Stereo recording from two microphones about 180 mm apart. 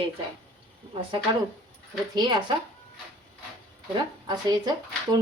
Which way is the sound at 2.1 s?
25° right (ahead or behind).